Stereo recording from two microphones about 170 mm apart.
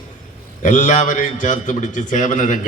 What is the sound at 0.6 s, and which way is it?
A man's voice, 50° left (ahead or behind).